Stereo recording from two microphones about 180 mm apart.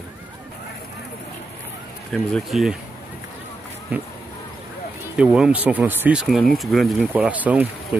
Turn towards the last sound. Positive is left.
turn(degrees=-10)  # may be behind; listen again after turning